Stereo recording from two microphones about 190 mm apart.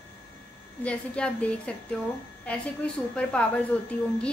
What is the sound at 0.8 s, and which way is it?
A woman's voice, 5° left (ahead or behind).